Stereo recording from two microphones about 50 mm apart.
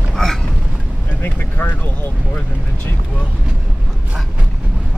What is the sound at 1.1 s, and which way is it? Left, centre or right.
Speech, left.